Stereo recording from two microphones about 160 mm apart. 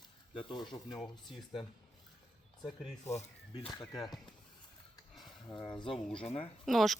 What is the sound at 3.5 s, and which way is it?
Speech, 25° left (ahead or behind).